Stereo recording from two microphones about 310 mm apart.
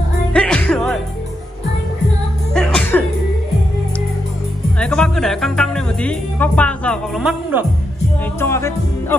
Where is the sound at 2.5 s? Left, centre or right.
Centre.